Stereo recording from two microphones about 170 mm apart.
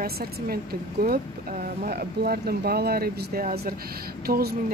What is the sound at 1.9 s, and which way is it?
Speech, 65° right (ahead or behind).